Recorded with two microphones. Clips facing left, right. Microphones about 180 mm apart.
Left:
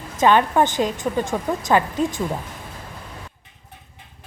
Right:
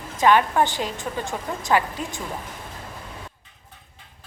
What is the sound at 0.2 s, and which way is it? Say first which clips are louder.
Speech: left 2 dB; 20° left (ahead or behind).